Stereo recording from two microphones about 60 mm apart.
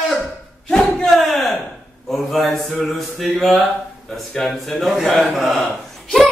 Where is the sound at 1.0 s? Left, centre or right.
Centre.